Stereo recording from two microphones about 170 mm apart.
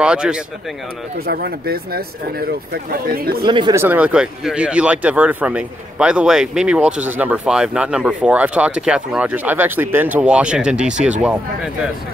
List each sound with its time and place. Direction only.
0.0 s speech: 5° right (ahead or behind)
1.2 s speech: 65° right (ahead or behind)
3.4 s speech: 25° right (ahead or behind)
3.7 s speech: 10° right (ahead or behind)